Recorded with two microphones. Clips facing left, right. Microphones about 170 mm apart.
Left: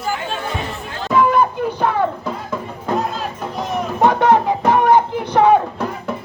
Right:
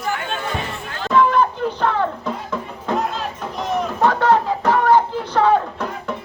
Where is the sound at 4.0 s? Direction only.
20° left (ahead or behind).